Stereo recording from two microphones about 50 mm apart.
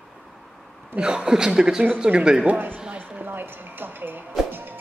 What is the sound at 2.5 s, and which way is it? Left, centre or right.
Speech, right.